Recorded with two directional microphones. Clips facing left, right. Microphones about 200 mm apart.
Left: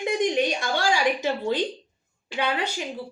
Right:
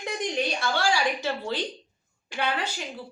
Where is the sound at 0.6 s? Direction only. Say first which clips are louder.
Left 2 dB; 15° left (ahead or behind).